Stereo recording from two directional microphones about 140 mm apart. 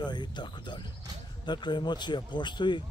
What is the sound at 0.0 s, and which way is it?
Music, 30° left (ahead or behind).